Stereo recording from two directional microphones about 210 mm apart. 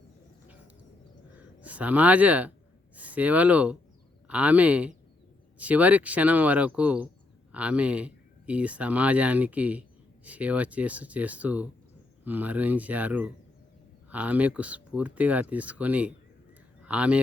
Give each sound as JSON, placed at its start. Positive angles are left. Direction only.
{"t": 1.6, "sound": "speech", "side_deg": -5}